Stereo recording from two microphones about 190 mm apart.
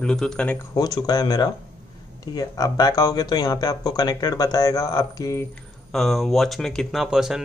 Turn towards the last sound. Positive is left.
turn(degrees=-5)  # may be behind; listen again after turning